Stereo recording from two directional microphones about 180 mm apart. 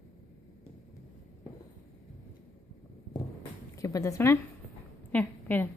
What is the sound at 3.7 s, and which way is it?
A woman's voice, 20° left (ahead or behind).